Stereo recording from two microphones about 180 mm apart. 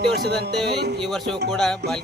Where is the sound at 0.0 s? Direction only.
65° right (ahead or behind).